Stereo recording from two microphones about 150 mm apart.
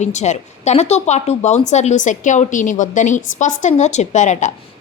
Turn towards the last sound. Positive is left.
turn(degrees=55)  # may be behind; listen again after turning